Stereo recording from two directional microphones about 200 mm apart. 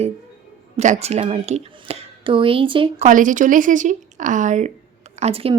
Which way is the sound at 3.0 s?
40° right (ahead or behind).